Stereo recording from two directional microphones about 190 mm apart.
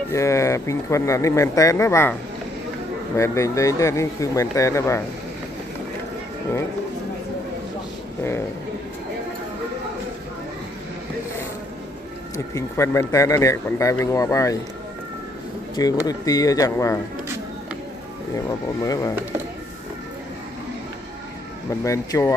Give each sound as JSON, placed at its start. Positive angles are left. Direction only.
{"t": 0.1, "sound": "speech", "side_deg": 15}
{"t": 3.2, "sound": "speech", "side_deg": 15}
{"t": 8.2, "sound": "speech", "side_deg": 15}
{"t": 12.5, "sound": "speech", "side_deg": 15}
{"t": 15.7, "sound": "speech", "side_deg": 20}
{"t": 18.5, "sound": "speech", "side_deg": 15}
{"t": 21.8, "sound": "speech", "side_deg": 15}